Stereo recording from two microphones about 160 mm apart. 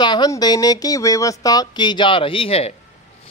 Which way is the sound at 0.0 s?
25° left (ahead or behind).